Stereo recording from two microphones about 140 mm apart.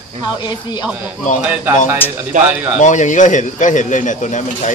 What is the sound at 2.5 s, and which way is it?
Speech, 10° right (ahead or behind).